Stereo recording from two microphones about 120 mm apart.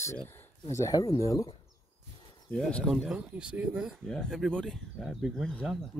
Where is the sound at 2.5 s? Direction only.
Centre (ahead or behind).